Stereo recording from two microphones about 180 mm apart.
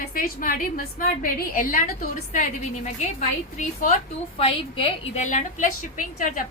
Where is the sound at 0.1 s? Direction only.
55° left (ahead or behind).